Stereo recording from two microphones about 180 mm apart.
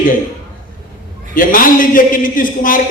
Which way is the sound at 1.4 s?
50° left (ahead or behind).